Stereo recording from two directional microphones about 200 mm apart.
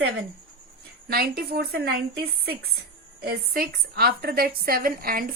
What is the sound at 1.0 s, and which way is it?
A woman's voice, 50° right (ahead or behind).